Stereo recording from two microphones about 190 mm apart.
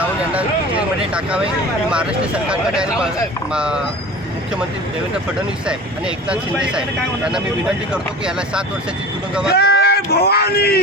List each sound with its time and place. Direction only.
1.9 s speech: 5° right (ahead or behind)
5.6 s speech: 5° right (ahead or behind)
7.9 s speech: 5° right (ahead or behind)
9.6 s speech: 55° left (ahead or behind)